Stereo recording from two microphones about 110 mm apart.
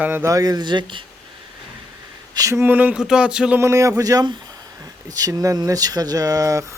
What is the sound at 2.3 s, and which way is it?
Speech, 30° right (ahead or behind).